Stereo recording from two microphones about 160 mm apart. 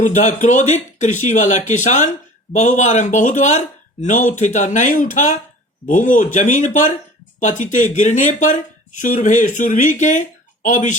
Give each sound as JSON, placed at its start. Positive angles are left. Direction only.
{"t": 0.0, "sound": "speech", "side_deg": 50}